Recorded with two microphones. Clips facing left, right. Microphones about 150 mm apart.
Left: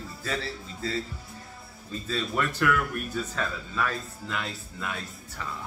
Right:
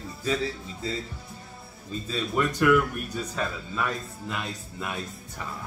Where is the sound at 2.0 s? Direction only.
15° right (ahead or behind).